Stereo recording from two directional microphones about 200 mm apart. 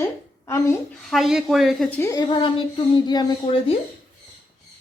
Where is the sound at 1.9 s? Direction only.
10° left (ahead or behind).